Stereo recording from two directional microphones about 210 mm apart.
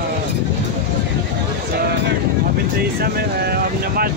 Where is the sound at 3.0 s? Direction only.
45° right (ahead or behind).